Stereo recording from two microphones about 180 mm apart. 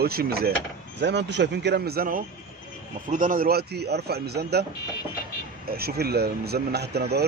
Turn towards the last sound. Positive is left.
turn(degrees=-65)  # may be behind; listen again after turning